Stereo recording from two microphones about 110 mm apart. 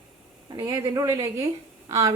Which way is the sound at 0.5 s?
30° right (ahead or behind).